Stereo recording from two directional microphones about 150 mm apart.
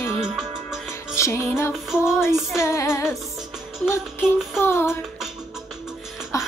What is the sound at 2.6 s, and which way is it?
Music, 20° left (ahead or behind).